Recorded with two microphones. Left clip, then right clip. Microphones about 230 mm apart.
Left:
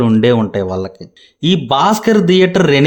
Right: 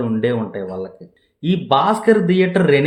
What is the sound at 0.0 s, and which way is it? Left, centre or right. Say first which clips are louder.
Speech: left 7 dB; left.